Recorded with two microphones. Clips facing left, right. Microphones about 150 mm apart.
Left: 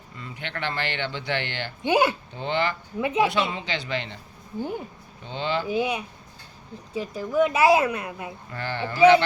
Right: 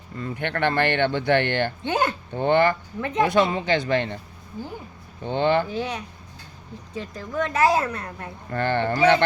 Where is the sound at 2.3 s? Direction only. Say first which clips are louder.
Right 7 dB; 55° right (ahead or behind).